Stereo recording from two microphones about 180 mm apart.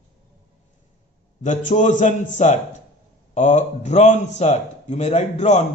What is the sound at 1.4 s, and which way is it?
A man's voice, 45° left (ahead or behind).